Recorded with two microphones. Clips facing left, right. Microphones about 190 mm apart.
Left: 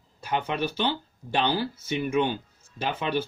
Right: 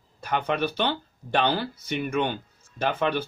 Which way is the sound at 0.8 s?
60° right (ahead or behind).